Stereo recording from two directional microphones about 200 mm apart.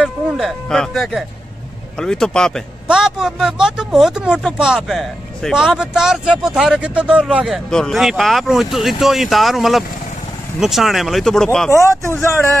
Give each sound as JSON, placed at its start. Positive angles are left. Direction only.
{"t": 0.0, "sound": "speech", "side_deg": 0}